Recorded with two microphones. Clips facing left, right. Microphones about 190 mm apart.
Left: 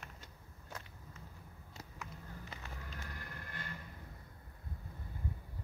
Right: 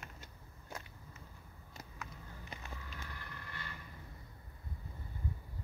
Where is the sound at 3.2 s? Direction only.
50° left (ahead or behind).